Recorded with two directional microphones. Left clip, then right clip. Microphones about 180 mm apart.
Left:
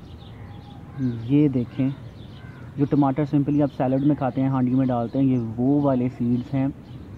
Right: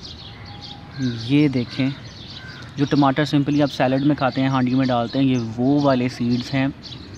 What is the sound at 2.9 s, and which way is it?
Speech, 25° right (ahead or behind).